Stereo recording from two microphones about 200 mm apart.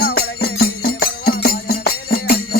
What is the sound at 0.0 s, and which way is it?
Music, 50° left (ahead or behind).